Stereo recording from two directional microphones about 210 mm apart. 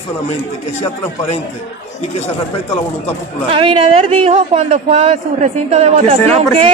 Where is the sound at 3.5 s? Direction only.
25° right (ahead or behind).